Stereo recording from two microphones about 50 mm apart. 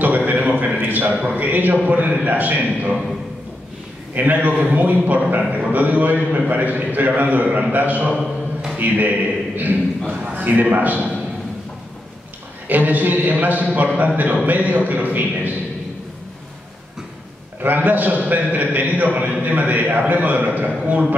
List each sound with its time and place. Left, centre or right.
0.0 s a sound: right
1.2 s a man's voice: right
4.1 s a man's voice: right
12.6 s a man's voice: right
17.6 s a man's voice: right